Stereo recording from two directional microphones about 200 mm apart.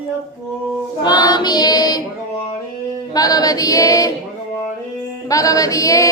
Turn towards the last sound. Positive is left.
turn(degrees=15)  # may be behind; listen again after turning